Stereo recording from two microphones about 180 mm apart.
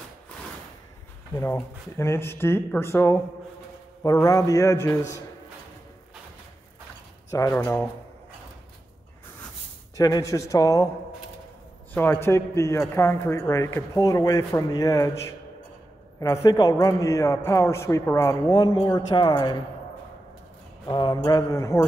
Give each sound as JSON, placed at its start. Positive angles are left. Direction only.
{"t": 1.3, "sound": "a man's voice", "side_deg": 15}
{"t": 7.2, "sound": "speech", "side_deg": 15}
{"t": 7.5, "sound": "speech", "side_deg": 5}
{"t": 9.9, "sound": "a man's voice", "side_deg": 20}
{"t": 11.9, "sound": "a man's voice", "side_deg": 10}
{"t": 20.8, "sound": "a man's voice", "side_deg": 25}